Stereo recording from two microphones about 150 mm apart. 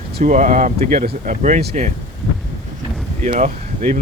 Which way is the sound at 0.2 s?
55° right (ahead or behind).